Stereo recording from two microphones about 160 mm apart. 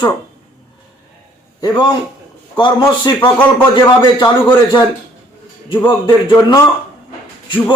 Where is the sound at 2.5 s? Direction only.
30° left (ahead or behind).